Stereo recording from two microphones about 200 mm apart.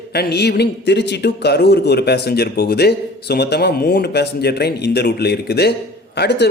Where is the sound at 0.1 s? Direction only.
55° left (ahead or behind).